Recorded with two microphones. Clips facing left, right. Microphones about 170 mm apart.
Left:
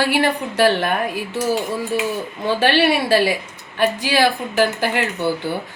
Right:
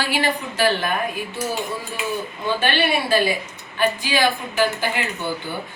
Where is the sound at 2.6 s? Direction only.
80° left.